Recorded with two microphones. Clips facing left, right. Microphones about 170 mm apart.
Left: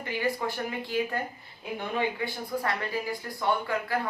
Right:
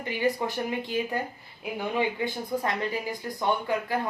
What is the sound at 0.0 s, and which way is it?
Speech, 20° right (ahead or behind).